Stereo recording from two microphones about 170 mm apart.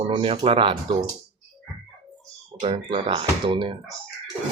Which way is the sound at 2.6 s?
35° right (ahead or behind).